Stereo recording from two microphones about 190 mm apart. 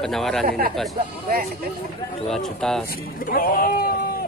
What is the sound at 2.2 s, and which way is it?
Speech, centre (ahead or behind).